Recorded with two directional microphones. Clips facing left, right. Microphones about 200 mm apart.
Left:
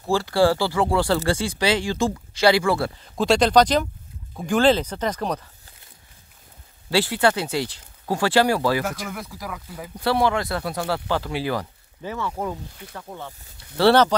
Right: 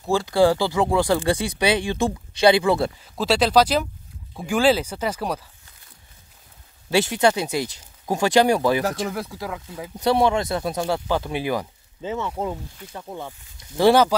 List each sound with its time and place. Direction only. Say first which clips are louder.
0.1 s speech: right 1 dB; 15° right (ahead or behind)
3.2 s speech: left 1 dB; 5° right (ahead or behind)
6.9 s speech: right 1 dB; 20° right (ahead or behind)
8.9 s speech: right 5 dB; 30° right (ahead or behind); by 14.1 s 10° right (ahead or behind)